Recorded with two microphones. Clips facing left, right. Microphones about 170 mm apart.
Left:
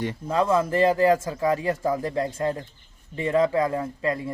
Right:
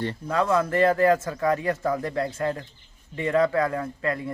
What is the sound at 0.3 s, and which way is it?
A man's voice, 25° left (ahead or behind).